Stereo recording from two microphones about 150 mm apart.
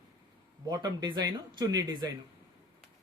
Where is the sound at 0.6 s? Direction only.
30° right (ahead or behind).